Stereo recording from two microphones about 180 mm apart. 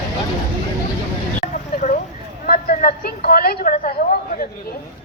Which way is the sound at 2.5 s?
50° left (ahead or behind).